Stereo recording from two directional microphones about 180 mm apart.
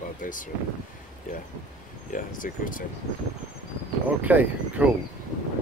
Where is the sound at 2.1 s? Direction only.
50° left (ahead or behind).